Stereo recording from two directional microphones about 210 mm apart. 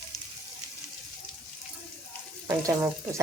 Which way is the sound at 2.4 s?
15° right (ahead or behind).